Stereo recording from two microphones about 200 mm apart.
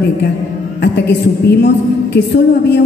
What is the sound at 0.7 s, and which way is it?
A woman's voice, 60° left (ahead or behind).